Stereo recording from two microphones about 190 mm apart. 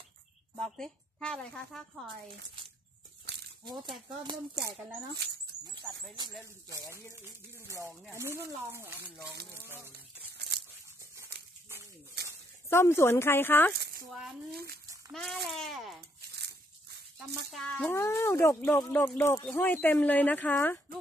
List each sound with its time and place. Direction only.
0.6 s speech: centre (ahead or behind)
8.1 s speech: 15° right (ahead or behind)
10.3 s tearing: 60° right (ahead or behind)
12.2 s a sound: 60° right (ahead or behind)
12.6 s speech: 15° left (ahead or behind)
14.5 s speech: 55° right (ahead or behind)
15.1 s speech: centre (ahead or behind)
16.3 s a sound: 60° right (ahead or behind)
17.5 s speech: 5° left (ahead or behind)